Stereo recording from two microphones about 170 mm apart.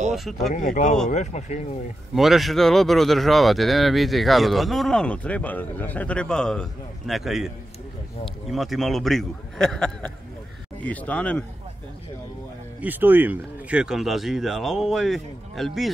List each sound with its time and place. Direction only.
0.1 s speech: centre (ahead or behind)
0.5 s speech: 50° left (ahead or behind)
2.1 s speech: centre (ahead or behind)
12.8 s speech: 10° right (ahead or behind)